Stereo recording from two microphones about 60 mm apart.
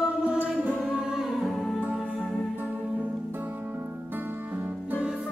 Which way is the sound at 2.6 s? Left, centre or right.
Right.